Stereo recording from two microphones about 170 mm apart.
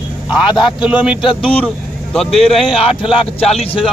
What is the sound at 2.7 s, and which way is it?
Speech, 35° left (ahead or behind).